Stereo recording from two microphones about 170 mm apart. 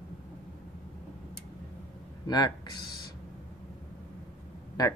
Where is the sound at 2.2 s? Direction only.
25° left (ahead or behind).